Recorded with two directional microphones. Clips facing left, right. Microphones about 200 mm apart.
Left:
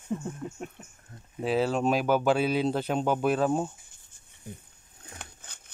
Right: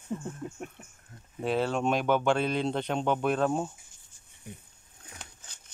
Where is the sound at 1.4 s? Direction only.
5° left (ahead or behind).